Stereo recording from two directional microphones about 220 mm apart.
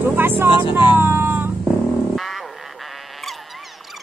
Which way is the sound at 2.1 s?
Centre (ahead or behind).